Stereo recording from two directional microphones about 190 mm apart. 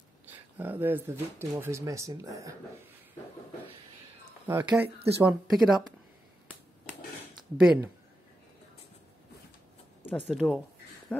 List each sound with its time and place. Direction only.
0.6 s speech: 10° right (ahead or behind)
4.5 s speech: 10° right (ahead or behind)
7.5 s speech: 5° right (ahead or behind)
10.0 s speech: 5° left (ahead or behind)
11.1 s a sound: 5° left (ahead or behind)